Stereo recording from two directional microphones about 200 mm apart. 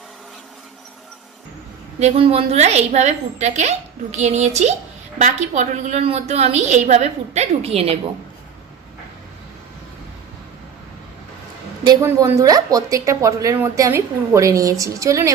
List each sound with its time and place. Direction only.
2.0 s a woman's voice: 30° right (ahead or behind)
11.9 s a woman's voice: 15° right (ahead or behind)